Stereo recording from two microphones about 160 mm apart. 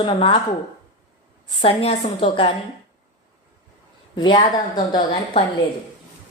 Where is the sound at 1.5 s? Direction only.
35° left (ahead or behind).